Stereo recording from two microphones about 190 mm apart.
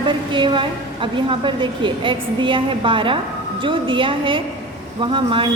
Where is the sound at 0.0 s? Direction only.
25° right (ahead or behind).